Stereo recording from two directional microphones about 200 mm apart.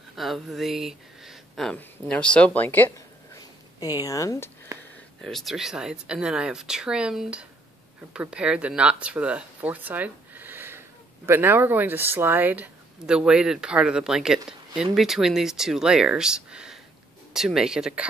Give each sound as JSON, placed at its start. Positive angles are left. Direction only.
{"t": 0.1, "sound": "speech", "side_deg": 0}
{"t": 3.8, "sound": "speech", "side_deg": 20}
{"t": 5.2, "sound": "speech", "side_deg": 0}